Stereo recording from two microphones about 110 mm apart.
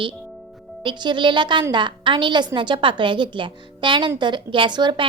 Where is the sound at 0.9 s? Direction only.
45° right (ahead or behind).